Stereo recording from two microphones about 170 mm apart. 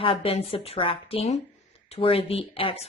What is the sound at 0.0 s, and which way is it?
A woman's voice, 35° left (ahead or behind).